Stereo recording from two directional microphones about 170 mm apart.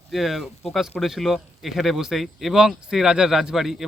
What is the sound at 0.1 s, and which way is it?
Speech, centre (ahead or behind).